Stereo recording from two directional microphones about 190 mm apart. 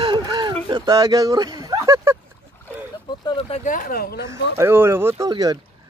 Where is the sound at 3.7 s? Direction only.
45° left (ahead or behind).